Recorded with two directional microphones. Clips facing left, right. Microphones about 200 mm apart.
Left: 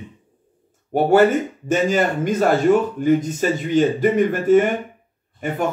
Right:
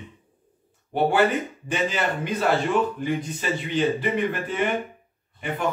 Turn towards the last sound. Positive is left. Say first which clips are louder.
# left 6 dB
turn(degrees=45)  # may be behind; listen again after turning